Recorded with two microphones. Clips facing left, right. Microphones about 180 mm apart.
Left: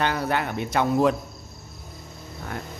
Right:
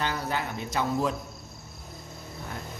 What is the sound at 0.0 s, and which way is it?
Speech, 65° left (ahead or behind).